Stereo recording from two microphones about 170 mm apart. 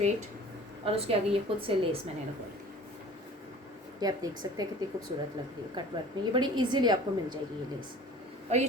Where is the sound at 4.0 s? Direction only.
20° right (ahead or behind).